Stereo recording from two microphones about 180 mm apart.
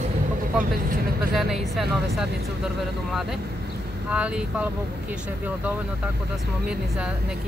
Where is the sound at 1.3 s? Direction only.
Centre (ahead or behind).